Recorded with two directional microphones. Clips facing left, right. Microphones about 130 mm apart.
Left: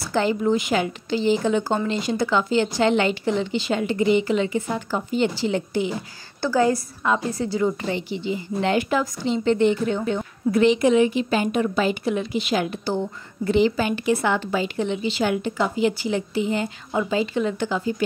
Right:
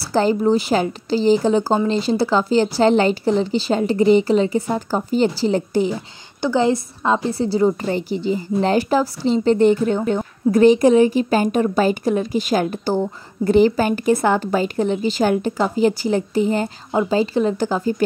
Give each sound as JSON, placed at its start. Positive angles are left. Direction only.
{"t": 0.0, "sound": "a woman's voice", "side_deg": -35}
{"t": 6.4, "sound": "a woman's voice", "side_deg": -20}